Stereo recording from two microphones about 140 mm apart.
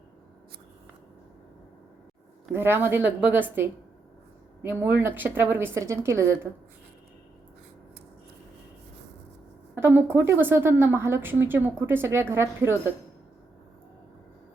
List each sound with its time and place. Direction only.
2.5 s a woman's voice: 15° right (ahead or behind)
9.7 s a woman's voice: 15° right (ahead or behind)